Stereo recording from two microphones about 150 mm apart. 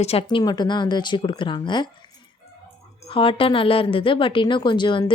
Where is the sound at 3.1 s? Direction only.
35° left (ahead or behind).